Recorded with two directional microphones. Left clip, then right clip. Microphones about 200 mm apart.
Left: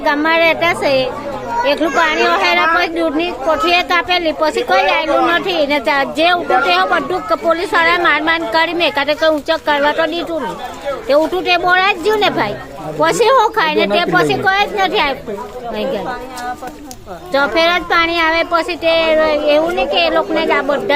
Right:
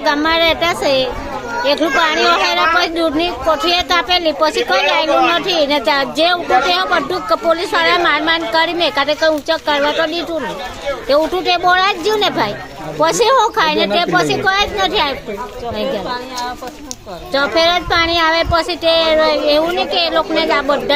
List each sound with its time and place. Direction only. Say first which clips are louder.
0.0 s a woman's voice: left 1 dB; 5° left (ahead or behind)
17.3 s a woman's voice: even; 10° left (ahead or behind)